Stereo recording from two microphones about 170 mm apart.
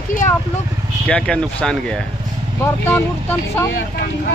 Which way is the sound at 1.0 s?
5° left (ahead or behind).